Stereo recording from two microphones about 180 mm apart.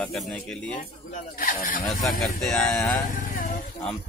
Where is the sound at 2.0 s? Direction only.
Centre (ahead or behind).